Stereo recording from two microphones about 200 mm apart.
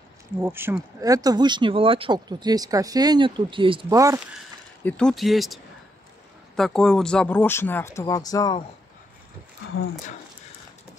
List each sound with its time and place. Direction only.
0.4 s speech: 10° right (ahead or behind)
4.8 s speech: 5° left (ahead or behind); by 8.6 s 20° left (ahead or behind)